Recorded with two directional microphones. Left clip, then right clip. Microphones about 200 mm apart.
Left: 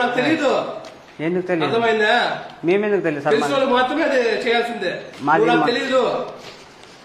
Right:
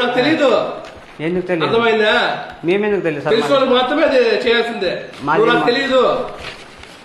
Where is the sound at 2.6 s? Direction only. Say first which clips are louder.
Right 2 dB; 40° left (ahead or behind).